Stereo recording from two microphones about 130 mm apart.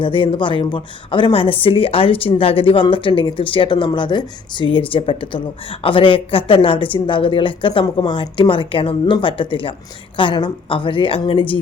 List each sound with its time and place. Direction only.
0.0 s a woman's voice: 40° left (ahead or behind)